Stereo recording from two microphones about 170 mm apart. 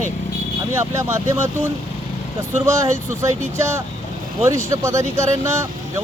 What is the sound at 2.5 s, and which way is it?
Speech, 15° right (ahead or behind).